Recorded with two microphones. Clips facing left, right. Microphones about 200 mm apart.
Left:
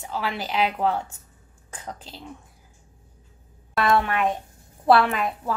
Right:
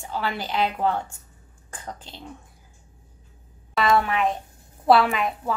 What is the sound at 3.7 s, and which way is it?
A woman's voice, centre (ahead or behind).